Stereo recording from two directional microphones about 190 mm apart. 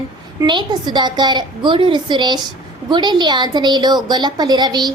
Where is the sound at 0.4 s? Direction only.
25° right (ahead or behind).